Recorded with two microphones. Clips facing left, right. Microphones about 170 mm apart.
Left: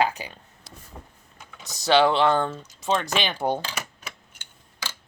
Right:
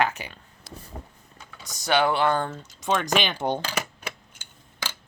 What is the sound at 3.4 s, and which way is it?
Speech, 35° left (ahead or behind).